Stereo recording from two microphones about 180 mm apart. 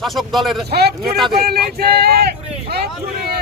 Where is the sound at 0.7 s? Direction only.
60° right (ahead or behind).